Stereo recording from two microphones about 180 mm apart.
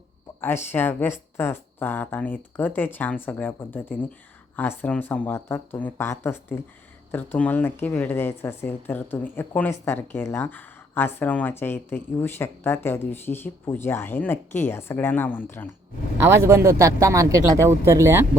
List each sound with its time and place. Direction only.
0.4 s speech: 10° left (ahead or behind)
16.2 s speech: 15° right (ahead or behind)